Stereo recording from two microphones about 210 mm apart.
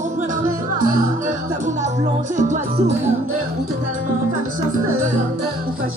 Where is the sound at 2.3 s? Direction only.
35° right (ahead or behind).